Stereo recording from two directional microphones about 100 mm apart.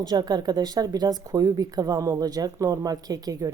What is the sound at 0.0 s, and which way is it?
Speech, 45° right (ahead or behind).